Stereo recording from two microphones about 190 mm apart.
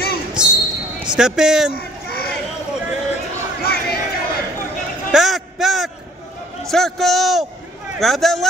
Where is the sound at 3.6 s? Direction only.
55° left (ahead or behind).